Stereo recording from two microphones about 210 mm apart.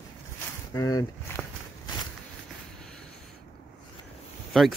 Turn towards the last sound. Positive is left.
turn(degrees=0)  # may be behind; listen again after turning